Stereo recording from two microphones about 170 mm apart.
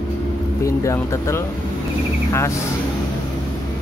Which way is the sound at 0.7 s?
15° left (ahead or behind).